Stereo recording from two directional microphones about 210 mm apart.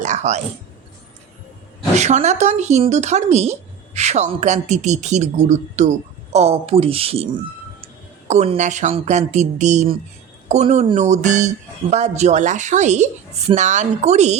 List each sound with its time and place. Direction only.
0.0 s speech: 35° right (ahead or behind)
2.0 s speech: 35° right (ahead or behind)
8.3 s speech: 30° right (ahead or behind)